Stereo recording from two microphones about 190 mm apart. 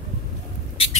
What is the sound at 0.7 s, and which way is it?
Mouse, 30° left (ahead or behind).